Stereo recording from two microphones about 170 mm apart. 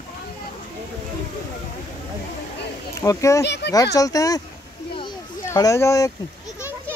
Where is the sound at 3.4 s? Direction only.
85° left.